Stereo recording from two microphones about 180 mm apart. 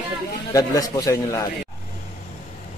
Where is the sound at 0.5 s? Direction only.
20° left (ahead or behind).